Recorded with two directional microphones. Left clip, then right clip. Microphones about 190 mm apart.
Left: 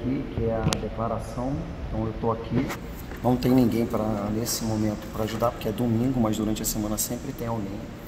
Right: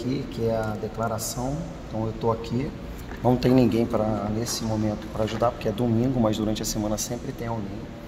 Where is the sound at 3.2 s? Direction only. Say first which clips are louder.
Right 2 dB; 25° right (ahead or behind).